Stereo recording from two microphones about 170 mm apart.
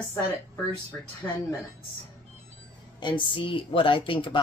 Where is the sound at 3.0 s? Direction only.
30° left (ahead or behind).